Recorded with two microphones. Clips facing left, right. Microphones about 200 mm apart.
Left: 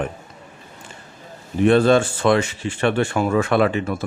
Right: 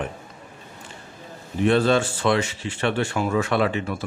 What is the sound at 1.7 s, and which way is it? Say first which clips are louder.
Speech: left 4 dB; 50° left (ahead or behind).